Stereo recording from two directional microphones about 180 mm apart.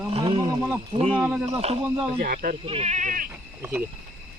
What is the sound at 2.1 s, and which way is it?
Speech, 60° right (ahead or behind).